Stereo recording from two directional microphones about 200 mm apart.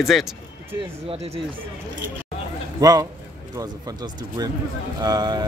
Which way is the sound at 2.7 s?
20° right (ahead or behind).